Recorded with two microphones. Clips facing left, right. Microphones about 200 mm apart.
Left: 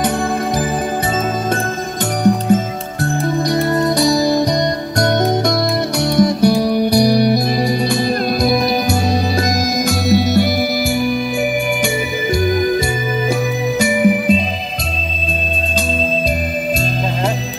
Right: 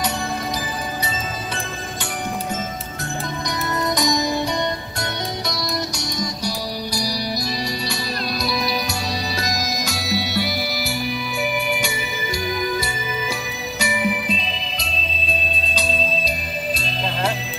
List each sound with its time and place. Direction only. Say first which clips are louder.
2.2 s music: left 15 dB; 50° left (ahead or behind)
3.0 s music: left 12 dB; 30° left (ahead or behind); by 10.5 s 50° left (ahead or behind)
12.4 s music: left 8 dB; 50° left (ahead or behind)
13.7 s music: left 8 dB; 50° left (ahead or behind)